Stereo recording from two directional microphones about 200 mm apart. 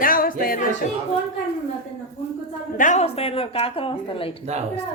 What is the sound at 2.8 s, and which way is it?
Speech, 35° left (ahead or behind).